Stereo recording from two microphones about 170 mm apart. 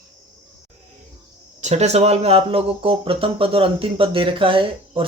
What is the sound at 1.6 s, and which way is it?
Speech, 40° right (ahead or behind).